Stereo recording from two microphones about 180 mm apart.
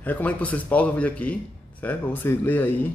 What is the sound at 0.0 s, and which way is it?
A man's voice, 10° left (ahead or behind).